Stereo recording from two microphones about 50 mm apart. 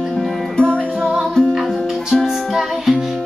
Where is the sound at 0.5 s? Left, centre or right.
Centre.